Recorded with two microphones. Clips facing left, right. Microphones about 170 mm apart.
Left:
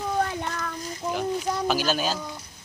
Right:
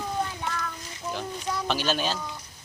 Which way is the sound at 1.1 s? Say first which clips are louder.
Left 5 dB; 5° left (ahead or behind).